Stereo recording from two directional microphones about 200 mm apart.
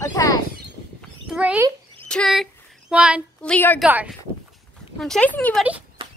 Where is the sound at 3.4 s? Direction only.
5° left (ahead or behind).